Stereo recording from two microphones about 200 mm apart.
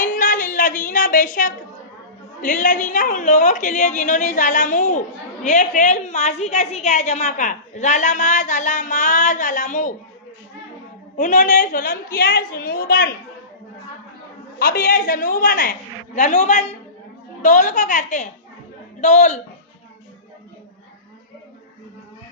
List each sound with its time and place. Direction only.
0.0 s music: 45° left (ahead or behind)
2.4 s a woman's voice: 40° left (ahead or behind)
11.2 s a woman's voice: 40° left (ahead or behind)
14.6 s a woman's voice: 45° left (ahead or behind)